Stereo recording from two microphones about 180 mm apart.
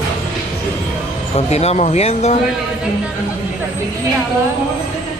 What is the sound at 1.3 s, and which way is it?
Speech, 35° left (ahead or behind).